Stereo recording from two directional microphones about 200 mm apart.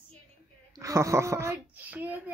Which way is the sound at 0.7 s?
15° right (ahead or behind).